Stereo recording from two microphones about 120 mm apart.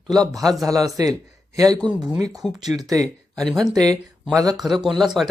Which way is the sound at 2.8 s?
30° right (ahead or behind).